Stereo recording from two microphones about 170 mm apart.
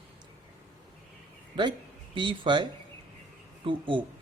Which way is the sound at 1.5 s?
25° right (ahead or behind).